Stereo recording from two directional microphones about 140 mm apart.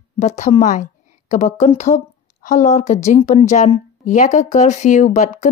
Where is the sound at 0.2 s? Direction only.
55° left (ahead or behind).